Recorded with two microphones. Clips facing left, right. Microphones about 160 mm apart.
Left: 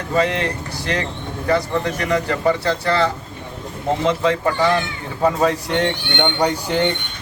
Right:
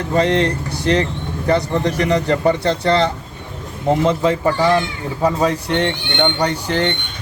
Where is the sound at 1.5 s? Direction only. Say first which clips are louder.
Right 2 dB; 30° right (ahead or behind).